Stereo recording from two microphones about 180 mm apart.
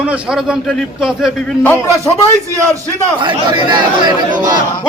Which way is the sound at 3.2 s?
25° right (ahead or behind).